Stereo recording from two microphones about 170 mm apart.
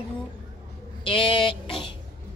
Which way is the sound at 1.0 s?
30° left (ahead or behind).